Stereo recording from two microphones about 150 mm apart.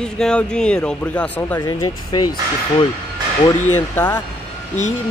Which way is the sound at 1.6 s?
25° left (ahead or behind).